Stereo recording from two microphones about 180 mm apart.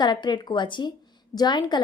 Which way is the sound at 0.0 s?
25° left (ahead or behind).